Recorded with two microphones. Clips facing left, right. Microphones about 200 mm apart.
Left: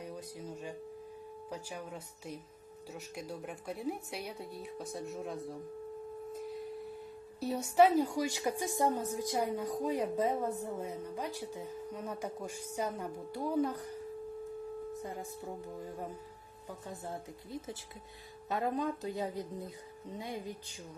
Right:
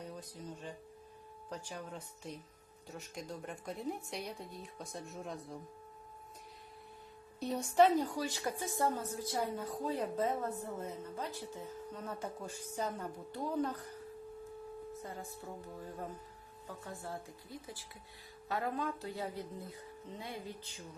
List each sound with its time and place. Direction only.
0.0 s a woman's voice: 10° left (ahead or behind)
6.3 s a sound: centre (ahead or behind)
7.3 s a woman's voice: 5° left (ahead or behind)